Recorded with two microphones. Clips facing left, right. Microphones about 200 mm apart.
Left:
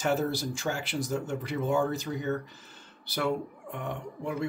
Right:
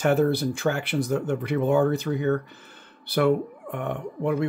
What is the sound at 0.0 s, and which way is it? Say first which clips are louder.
Speech: right 7 dB; 60° right (ahead or behind).